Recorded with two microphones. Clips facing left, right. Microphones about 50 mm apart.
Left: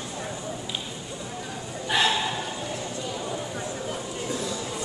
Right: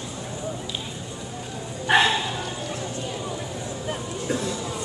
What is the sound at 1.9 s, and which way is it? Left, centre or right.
Dog, right.